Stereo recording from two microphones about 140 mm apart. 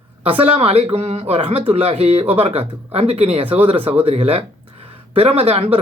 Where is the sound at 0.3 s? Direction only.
40° right (ahead or behind).